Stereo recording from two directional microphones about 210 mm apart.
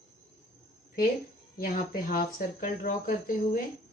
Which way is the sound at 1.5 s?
45° left (ahead or behind).